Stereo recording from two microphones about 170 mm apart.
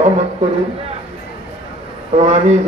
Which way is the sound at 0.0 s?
45° right (ahead or behind).